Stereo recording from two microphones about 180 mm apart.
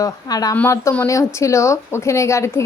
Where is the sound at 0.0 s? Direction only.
20° left (ahead or behind).